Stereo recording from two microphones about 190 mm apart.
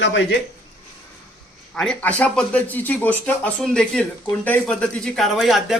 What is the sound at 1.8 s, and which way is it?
Speech, 5° left (ahead or behind).